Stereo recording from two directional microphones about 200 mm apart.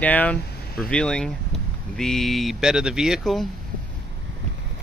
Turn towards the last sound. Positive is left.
turn(degrees=0)  # may be behind; listen again after turning